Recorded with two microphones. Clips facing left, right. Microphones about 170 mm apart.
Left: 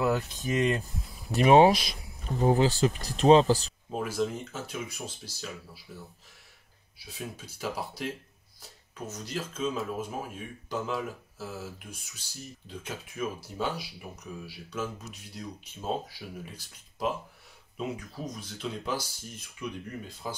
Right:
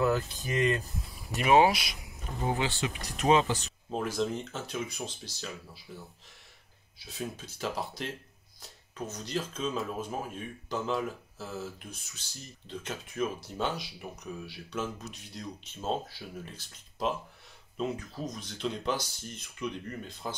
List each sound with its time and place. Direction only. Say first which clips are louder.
0.0 s speech: even; 20° left (ahead or behind)
1.3 s speech: left 4 dB; 35° left (ahead or behind)
3.9 s speech: left 1 dB; 5° left (ahead or behind)
7.1 s speech: right 2 dB; 10° left (ahead or behind)